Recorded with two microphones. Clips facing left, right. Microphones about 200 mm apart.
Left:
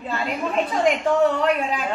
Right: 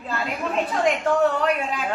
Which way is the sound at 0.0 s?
Centre (ahead or behind).